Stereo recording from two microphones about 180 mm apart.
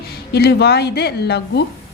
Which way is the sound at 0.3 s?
65° left (ahead or behind).